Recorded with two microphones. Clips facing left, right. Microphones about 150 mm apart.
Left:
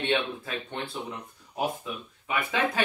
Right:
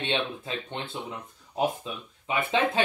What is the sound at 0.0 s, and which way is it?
Speech, 20° right (ahead or behind).